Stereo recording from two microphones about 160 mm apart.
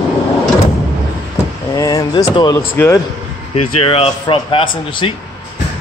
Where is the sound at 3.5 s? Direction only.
35° left (ahead or behind).